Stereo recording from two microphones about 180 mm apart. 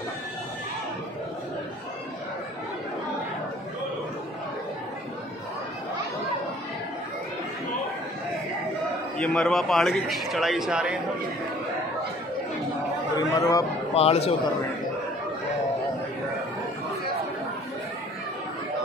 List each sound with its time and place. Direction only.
9.2 s a man's voice: 5° left (ahead or behind)
13.1 s speech: 20° left (ahead or behind)
13.9 s speech: 35° left (ahead or behind)